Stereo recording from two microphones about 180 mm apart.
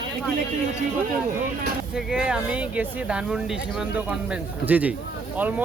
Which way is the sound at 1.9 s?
5° right (ahead or behind).